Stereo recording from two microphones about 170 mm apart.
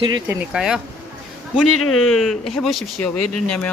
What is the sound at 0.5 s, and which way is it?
Speech, 5° right (ahead or behind).